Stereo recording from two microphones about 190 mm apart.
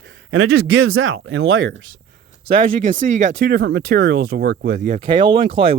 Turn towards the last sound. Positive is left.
turn(degrees=-25)  # may be behind; listen again after turning